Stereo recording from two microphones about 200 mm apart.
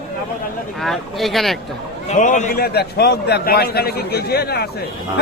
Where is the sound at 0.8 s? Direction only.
Centre (ahead or behind).